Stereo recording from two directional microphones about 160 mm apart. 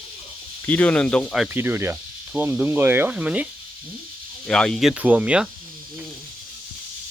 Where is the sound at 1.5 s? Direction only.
15° right (ahead or behind).